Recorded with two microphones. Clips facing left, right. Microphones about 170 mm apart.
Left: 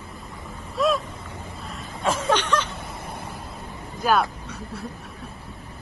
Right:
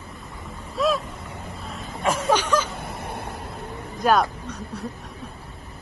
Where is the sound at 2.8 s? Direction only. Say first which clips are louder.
Right 3 dB; 65° right (ahead or behind).